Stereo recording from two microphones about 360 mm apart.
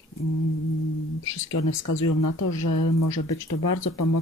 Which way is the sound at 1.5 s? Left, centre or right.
Left.